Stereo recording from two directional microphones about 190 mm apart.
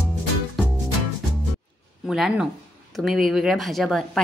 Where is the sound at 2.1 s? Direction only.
5° right (ahead or behind).